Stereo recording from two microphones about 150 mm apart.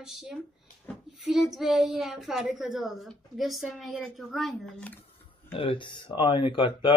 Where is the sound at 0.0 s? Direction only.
Centre (ahead or behind).